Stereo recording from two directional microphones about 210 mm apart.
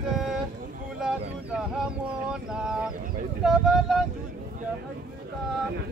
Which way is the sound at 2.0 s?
5° right (ahead or behind).